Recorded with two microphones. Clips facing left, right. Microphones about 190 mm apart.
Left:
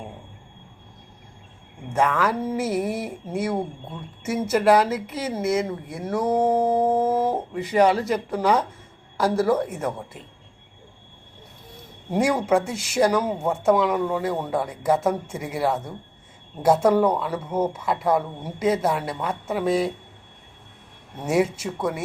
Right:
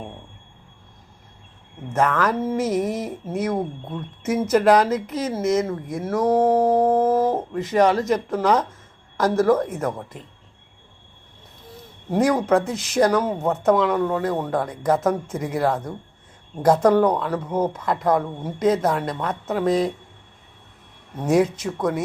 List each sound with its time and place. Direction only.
1.9 s speech: 10° left (ahead or behind)
12.1 s speech: 10° left (ahead or behind)
21.2 s speech: 10° left (ahead or behind)